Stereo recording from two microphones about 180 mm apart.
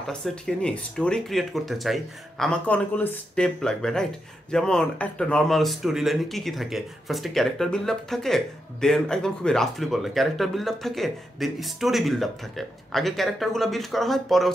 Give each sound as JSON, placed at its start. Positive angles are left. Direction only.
{"t": 0.1, "sound": "speech", "side_deg": 5}